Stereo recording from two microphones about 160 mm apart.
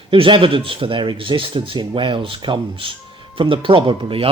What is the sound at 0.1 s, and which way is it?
Speech, 35° right (ahead or behind).